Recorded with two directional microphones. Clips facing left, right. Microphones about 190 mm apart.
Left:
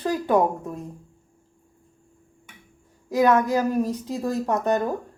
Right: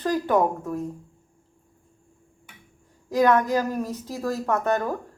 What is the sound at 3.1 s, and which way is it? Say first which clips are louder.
A woman's voice: left 1 dB; 10° left (ahead or behind).